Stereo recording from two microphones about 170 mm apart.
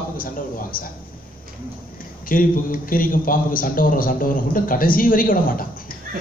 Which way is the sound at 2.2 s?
55° left (ahead or behind).